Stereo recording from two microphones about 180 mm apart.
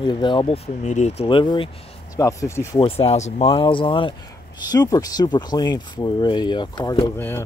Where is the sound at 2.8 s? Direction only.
35° left (ahead or behind); by 7.4 s 10° left (ahead or behind).